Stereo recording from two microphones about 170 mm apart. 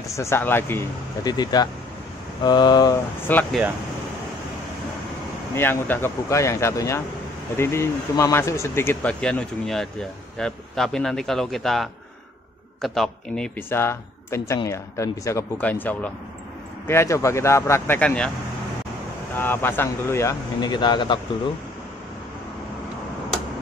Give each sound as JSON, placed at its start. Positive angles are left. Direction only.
{"t": 0.1, "sound": "speech", "side_deg": 15}
{"t": 3.3, "sound": "speech", "side_deg": 10}
{"t": 5.5, "sound": "speech", "side_deg": 10}
{"t": 13.6, "sound": "speech", "side_deg": 15}
{"t": 19.3, "sound": "speech", "side_deg": 10}